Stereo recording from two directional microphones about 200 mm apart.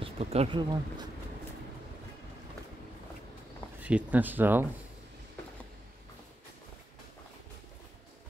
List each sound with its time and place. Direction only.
0.0 s speech: 30° right (ahead or behind)
3.8 s speech: 5° right (ahead or behind)